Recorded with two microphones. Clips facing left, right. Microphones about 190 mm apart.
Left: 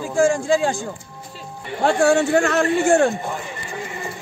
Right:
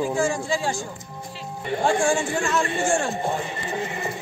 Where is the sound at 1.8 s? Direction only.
65° left (ahead or behind).